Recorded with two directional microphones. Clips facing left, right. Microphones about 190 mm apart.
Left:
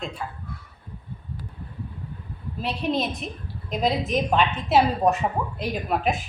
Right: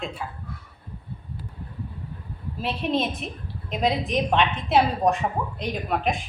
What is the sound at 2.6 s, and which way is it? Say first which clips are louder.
A woman's voice: even; centre (ahead or behind).